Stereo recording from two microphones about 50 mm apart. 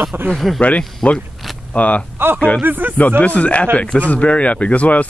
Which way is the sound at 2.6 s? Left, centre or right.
Right.